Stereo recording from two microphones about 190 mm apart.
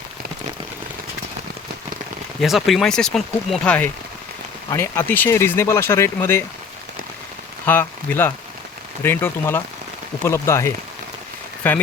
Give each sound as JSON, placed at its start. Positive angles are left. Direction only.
{"t": 2.4, "sound": "speech", "side_deg": 0}
{"t": 7.6, "sound": "speech", "side_deg": 10}